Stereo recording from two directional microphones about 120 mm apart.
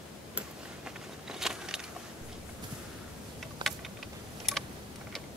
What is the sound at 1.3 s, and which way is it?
Biting, 5° right (ahead or behind).